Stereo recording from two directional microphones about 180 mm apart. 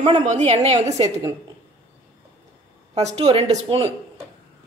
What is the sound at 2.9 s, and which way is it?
A woman's voice, 40° right (ahead or behind).